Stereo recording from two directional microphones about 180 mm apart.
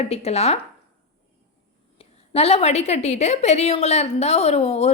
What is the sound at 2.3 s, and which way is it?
A woman's voice, 35° left (ahead or behind).